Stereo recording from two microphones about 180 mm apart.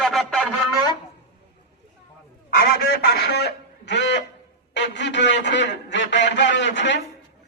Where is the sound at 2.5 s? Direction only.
55° left (ahead or behind); by 7.0 s 80° left.